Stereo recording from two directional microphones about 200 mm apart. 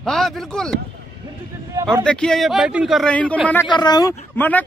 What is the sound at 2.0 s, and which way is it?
Speech, 5° left (ahead or behind).